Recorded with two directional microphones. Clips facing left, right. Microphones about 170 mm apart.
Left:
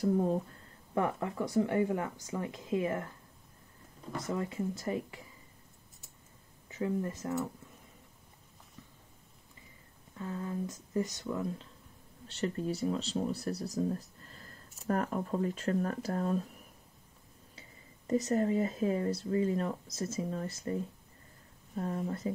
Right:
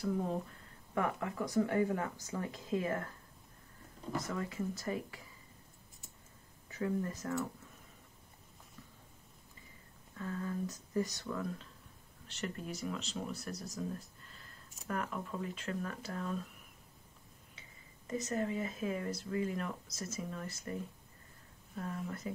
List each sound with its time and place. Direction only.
0.9 s speech: 30° left (ahead or behind)
4.3 s speech: 25° left (ahead or behind)
6.7 s speech: 25° left (ahead or behind)
10.1 s speech: 20° left (ahead or behind); by 16.4 s 40° left (ahead or behind)
17.6 s speech: 35° left (ahead or behind)